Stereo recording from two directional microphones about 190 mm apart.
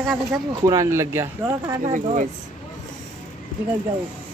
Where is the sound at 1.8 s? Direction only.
40° right (ahead or behind).